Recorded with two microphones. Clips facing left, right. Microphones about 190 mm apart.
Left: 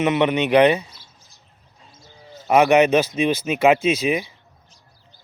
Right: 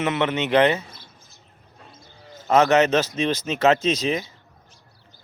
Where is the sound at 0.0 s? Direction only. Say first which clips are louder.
Left 4 dB; 15° left (ahead or behind).